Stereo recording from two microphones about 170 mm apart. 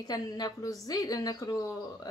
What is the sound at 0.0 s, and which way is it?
A woman's voice, 20° left (ahead or behind).